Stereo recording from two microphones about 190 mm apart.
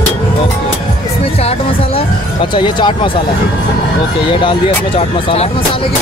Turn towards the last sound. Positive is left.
turn(degrees=30)  # may be behind; listen again after turning